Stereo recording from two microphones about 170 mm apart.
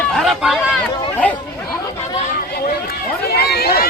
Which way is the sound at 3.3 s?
70° left (ahead or behind).